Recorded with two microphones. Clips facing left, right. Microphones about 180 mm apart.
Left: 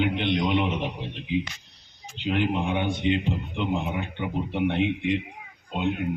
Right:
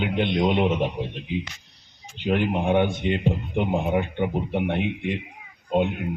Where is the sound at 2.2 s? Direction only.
50° right (ahead or behind).